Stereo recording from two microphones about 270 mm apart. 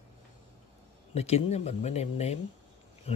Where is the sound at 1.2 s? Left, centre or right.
Left.